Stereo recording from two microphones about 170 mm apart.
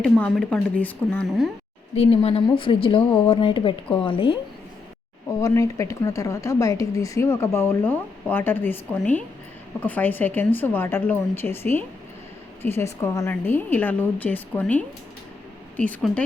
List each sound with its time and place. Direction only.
0.0 s speech: 5° left (ahead or behind)
2.0 s speech: 35° left (ahead or behind)
5.3 s speech: 20° left (ahead or behind)